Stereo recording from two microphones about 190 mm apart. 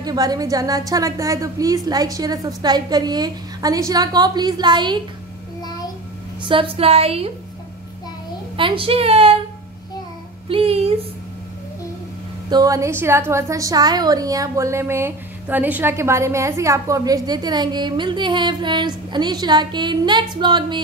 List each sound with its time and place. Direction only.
0.0 s a woman's voice: 20° right (ahead or behind)
6.4 s a woman's voice: 30° right (ahead or behind)
8.5 s a woman's voice: 30° right (ahead or behind)
10.5 s a woman's voice: 30° right (ahead or behind)
12.4 s a woman's voice: 20° right (ahead or behind)